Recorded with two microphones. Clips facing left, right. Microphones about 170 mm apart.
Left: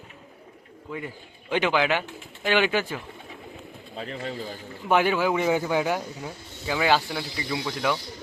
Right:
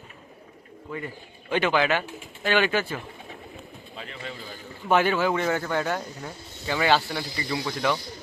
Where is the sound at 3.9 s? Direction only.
35° left (ahead or behind).